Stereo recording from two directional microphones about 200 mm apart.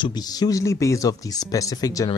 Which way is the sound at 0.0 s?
20° left (ahead or behind).